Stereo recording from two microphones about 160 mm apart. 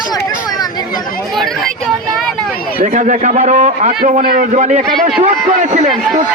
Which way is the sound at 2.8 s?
50° right (ahead or behind).